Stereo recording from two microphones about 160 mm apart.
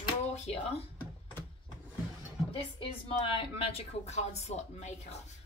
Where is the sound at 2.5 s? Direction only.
35° left (ahead or behind).